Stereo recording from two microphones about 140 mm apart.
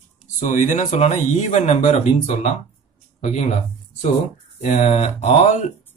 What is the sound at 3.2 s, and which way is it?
Speech, 60° left (ahead or behind).